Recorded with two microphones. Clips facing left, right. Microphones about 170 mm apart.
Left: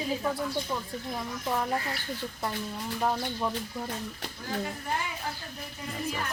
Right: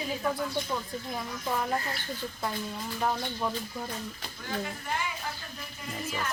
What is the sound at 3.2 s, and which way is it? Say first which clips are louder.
Speech: left 1 dB; 5° left (ahead or behind).